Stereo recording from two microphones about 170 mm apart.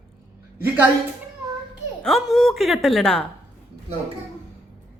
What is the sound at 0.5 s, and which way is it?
Speech, 10° right (ahead or behind).